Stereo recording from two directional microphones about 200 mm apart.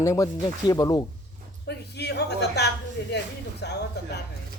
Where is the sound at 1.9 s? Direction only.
55° left (ahead or behind).